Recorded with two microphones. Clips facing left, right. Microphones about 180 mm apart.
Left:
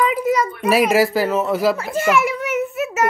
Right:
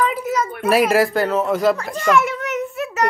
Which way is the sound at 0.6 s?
Centre (ahead or behind).